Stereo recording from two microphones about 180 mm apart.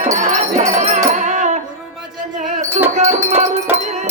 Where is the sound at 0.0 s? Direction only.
40° right (ahead or behind).